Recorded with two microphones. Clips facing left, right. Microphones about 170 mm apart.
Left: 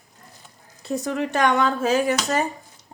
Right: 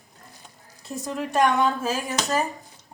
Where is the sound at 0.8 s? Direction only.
80° left.